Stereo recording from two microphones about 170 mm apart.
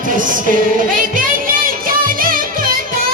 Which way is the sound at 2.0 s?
55° right (ahead or behind).